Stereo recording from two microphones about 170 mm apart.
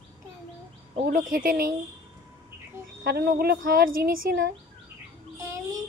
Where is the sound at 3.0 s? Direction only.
65° right (ahead or behind).